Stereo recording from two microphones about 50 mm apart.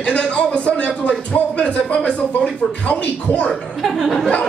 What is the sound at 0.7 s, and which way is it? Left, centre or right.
Speech, left.